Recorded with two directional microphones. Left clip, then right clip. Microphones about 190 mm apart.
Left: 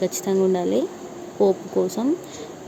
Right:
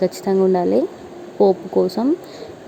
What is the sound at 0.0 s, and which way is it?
Speech, 15° right (ahead or behind).